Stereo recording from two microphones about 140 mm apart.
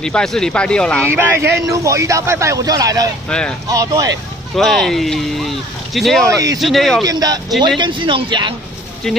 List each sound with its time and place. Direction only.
0.0 s speech: 5° left (ahead or behind)
1.0 s a man's voice: 15° right (ahead or behind)
3.3 s speech: 5° left (ahead or behind)
3.6 s a man's voice: 25° right (ahead or behind)
4.6 s speech: centre (ahead or behind)
7.1 s a man's voice: 25° right (ahead or behind)